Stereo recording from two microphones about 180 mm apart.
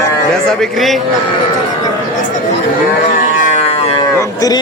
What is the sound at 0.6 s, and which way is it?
Speech, centre (ahead or behind).